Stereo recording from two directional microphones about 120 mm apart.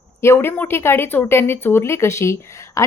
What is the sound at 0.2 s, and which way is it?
A woman's voice, 20° left (ahead or behind).